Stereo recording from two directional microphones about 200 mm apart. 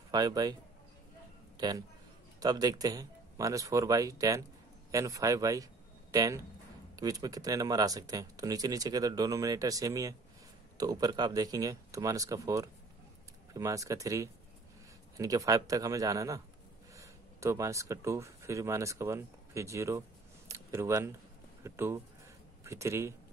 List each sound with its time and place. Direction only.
0.1 s speech: 20° right (ahead or behind)
1.6 s speech: 20° right (ahead or behind)